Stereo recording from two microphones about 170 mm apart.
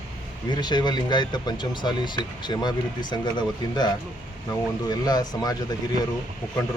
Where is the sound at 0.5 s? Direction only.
25° left (ahead or behind).